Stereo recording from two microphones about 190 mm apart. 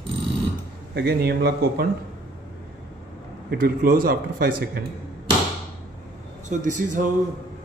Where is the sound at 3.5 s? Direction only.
50° right (ahead or behind).